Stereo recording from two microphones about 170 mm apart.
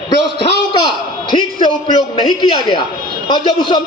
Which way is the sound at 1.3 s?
25° left (ahead or behind).